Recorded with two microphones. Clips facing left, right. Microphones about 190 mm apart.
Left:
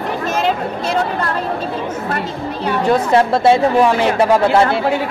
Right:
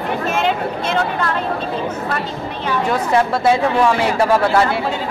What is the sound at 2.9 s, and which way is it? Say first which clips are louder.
Speech: left 4 dB; 30° left (ahead or behind).